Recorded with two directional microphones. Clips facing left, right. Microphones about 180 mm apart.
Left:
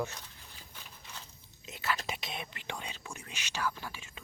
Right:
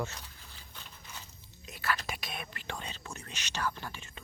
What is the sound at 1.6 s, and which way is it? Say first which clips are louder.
Whispering: even; 20° left (ahead or behind).